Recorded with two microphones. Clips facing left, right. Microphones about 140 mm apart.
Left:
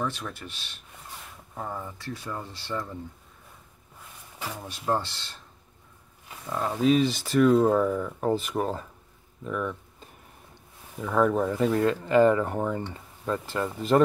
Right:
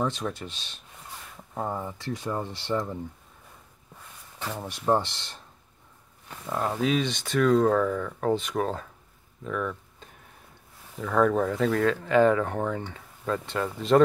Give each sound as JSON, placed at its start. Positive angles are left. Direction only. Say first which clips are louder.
{"t": 0.0, "sound": "speech", "louder": "right 3 dB", "side_deg": -20}
{"t": 4.6, "sound": "speech", "louder": "right 4 dB", "side_deg": -20}
{"t": 6.5, "sound": "speech", "louder": "left 3 dB", "side_deg": -5}